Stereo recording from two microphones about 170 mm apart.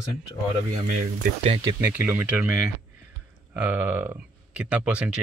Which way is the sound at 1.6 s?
25° right (ahead or behind).